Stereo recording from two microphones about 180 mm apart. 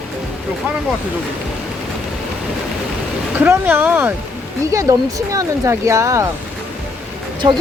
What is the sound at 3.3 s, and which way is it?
Speech, 10° right (ahead or behind).